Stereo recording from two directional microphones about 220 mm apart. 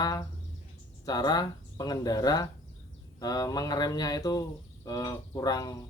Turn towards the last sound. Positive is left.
turn(degrees=15)  # may be behind; listen again after turning